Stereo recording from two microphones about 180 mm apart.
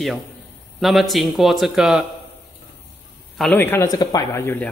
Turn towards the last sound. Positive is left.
turn(degrees=10)  # may be behind; listen again after turning